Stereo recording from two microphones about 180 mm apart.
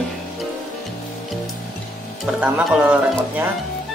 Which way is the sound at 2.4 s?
10° right (ahead or behind).